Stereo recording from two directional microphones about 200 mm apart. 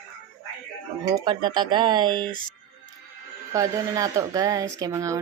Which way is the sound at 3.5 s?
15° right (ahead or behind).